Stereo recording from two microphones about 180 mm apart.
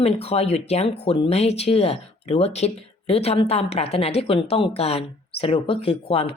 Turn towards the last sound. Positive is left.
turn(degrees=35)  # may be behind; listen again after turning